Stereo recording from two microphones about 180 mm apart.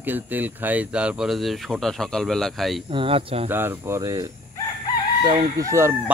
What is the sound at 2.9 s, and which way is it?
Speech, 30° right (ahead or behind).